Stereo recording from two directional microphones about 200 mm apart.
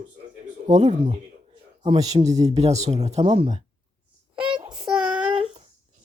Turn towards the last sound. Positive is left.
turn(degrees=-5)  # may be behind; listen again after turning